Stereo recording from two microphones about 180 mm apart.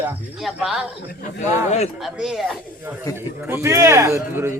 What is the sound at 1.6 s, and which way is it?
Speech, 35° left (ahead or behind).